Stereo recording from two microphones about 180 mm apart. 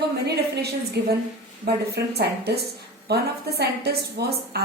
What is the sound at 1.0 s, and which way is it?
Speech, 70° right (ahead or behind).